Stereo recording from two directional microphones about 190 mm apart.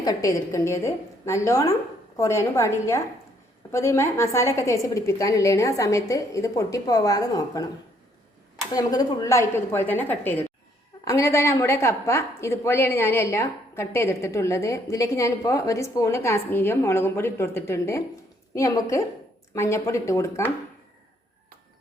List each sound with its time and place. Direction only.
0.0 s a woman's voice: 20° left (ahead or behind)
8.7 s a woman's voice: 20° left (ahead or behind)